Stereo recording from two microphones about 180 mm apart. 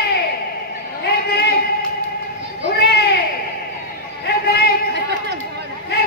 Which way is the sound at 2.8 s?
65° left (ahead or behind).